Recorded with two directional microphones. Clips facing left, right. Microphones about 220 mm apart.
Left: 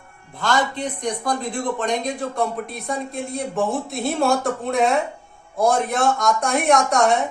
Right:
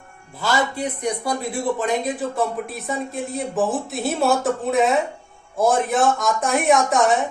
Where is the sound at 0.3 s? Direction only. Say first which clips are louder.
Even; 5° right (ahead or behind).